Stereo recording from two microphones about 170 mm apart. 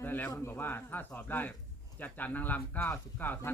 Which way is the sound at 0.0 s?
10° left (ahead or behind).